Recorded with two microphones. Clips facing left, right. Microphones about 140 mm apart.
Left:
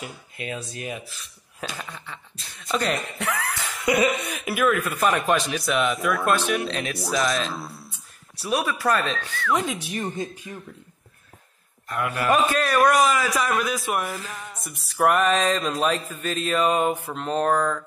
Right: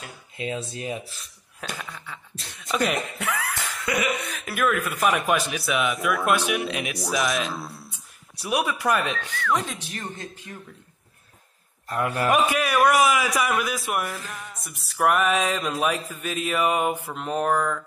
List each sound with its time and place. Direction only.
0.4 s speech: 25° right (ahead or behind)
1.8 s a man's voice: centre (ahead or behind)
3.9 s a sound: 20° left (ahead or behind)
4.3 s a man's voice: 5° left (ahead or behind)
6.3 s mantra: 10° right (ahead or behind)
7.2 s a man's voice: centre (ahead or behind)
8.4 s mantra: 15° right (ahead or behind)
9.5 s speech: 5° left (ahead or behind)
11.9 s a man's voice: 35° right (ahead or behind)
12.4 s a man's voice: 10° right (ahead or behind)
15.0 s mantra: 5° right (ahead or behind)
17.1 s a man's voice: 10° right (ahead or behind)